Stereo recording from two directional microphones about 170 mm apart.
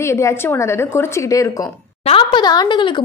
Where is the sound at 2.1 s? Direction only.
30° left (ahead or behind).